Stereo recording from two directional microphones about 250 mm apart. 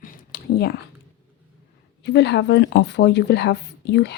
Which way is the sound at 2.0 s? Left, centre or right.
Left.